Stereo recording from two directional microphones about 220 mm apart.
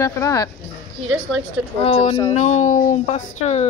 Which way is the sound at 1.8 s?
25° left (ahead or behind).